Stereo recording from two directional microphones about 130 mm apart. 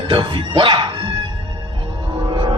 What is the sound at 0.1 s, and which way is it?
Music, 35° right (ahead or behind).